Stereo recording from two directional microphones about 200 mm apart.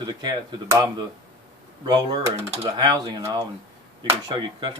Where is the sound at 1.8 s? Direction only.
20° right (ahead or behind).